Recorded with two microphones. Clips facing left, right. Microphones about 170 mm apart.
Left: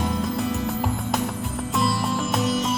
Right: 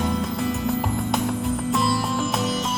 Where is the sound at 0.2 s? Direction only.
Centre (ahead or behind).